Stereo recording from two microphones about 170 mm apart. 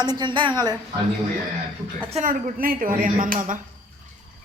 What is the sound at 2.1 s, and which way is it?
A woman's voice, 45° right (ahead or behind).